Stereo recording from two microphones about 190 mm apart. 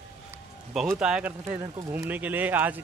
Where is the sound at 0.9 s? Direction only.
5° right (ahead or behind).